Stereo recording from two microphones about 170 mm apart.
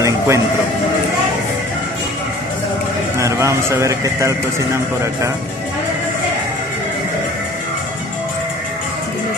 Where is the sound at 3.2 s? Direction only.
15° right (ahead or behind).